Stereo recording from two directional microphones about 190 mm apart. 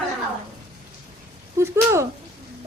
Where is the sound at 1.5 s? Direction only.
15° right (ahead or behind).